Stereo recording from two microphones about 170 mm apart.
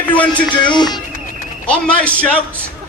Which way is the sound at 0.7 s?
25° left (ahead or behind).